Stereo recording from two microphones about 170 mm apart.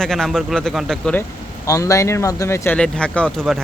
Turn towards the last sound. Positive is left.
turn(degrees=5)  # may be behind; listen again after turning